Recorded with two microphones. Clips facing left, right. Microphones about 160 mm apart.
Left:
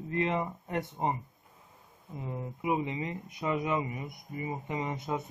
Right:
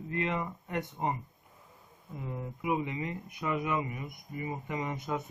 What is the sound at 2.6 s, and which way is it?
A man's voice, 20° left (ahead or behind).